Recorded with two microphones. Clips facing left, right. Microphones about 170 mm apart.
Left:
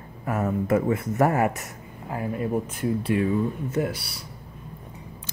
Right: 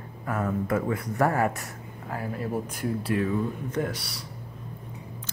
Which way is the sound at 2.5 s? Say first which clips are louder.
Left 3 dB; 5° left (ahead or behind).